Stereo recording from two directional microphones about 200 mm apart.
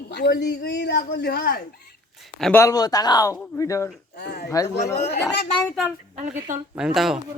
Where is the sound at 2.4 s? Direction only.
10° left (ahead or behind).